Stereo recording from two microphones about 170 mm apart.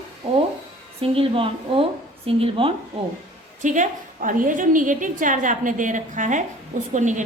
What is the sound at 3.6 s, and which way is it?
A woman's voice, 50° right (ahead or behind).